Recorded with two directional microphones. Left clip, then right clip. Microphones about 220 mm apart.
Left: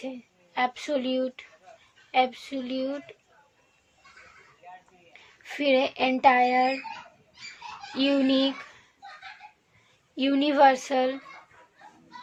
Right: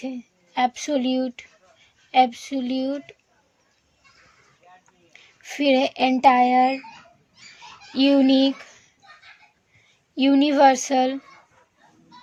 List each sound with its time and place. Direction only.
0.0 s speech: 40° right (ahead or behind)
5.1 s speech: 35° right (ahead or behind)
7.9 s speech: 40° right (ahead or behind)
10.2 s speech: 35° right (ahead or behind)